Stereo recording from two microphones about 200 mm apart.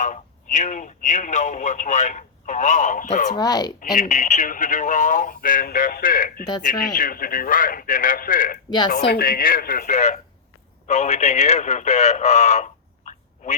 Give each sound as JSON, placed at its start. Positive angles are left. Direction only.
{"t": 0.0, "sound": "a man's voice", "side_deg": 40}
{"t": 3.3, "sound": "speech", "side_deg": 20}
{"t": 3.8, "sound": "speech", "side_deg": 40}